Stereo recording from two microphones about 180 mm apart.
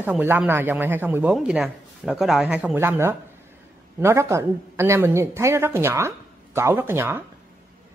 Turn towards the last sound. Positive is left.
turn(degrees=-10)  # may be behind; listen again after turning